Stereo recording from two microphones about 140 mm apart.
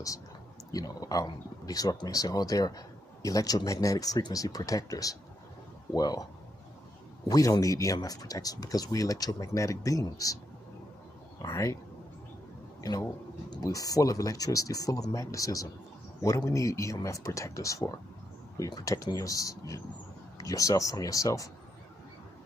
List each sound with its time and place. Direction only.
0.7 s speech: 25° left (ahead or behind)
7.2 s speech: 25° left (ahead or behind)
11.4 s speech: 20° left (ahead or behind)
12.8 s speech: 25° left (ahead or behind)